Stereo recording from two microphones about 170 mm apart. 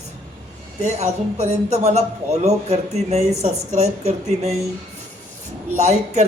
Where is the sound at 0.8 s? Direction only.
40° right (ahead or behind).